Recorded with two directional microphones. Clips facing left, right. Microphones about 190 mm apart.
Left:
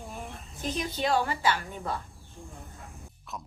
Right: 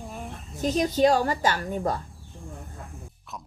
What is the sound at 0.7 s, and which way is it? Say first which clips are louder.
A woman's voice: right 7 dB; 40° right (ahead or behind).